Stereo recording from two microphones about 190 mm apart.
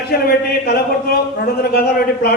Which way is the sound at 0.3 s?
50° left (ahead or behind).